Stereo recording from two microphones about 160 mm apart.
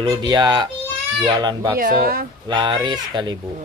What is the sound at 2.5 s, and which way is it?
Speech, 30° right (ahead or behind).